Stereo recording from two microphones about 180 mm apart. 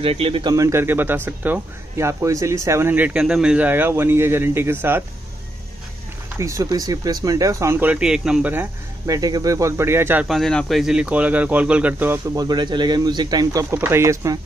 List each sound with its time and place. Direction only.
0.0 s speech: 30° right (ahead or behind); by 5.0 s 10° right (ahead or behind)
6.3 s speech: 15° right (ahead or behind)
10.2 s speech: centre (ahead or behind)
12.4 s speech: 25° right (ahead or behind)